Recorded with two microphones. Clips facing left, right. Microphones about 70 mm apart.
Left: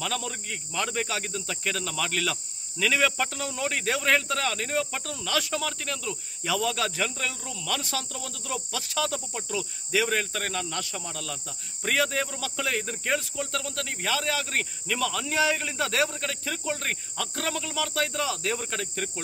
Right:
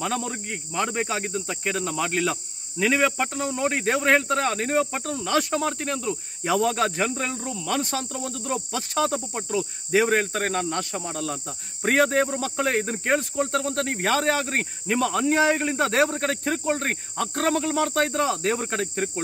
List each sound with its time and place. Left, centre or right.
0.0 s speech: right
7.8 s cricket: right